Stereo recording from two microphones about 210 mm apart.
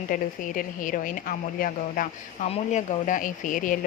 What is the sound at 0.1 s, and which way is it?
Speech, 40° left (ahead or behind).